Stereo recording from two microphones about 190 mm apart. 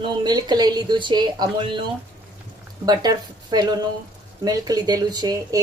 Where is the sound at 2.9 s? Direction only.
20° right (ahead or behind).